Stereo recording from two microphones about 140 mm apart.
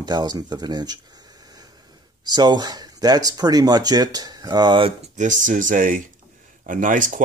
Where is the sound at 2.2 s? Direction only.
30° right (ahead or behind).